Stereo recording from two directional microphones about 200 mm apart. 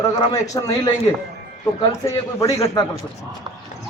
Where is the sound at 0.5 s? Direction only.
15° left (ahead or behind).